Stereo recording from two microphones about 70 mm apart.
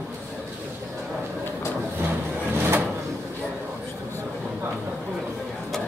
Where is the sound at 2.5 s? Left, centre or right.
Right.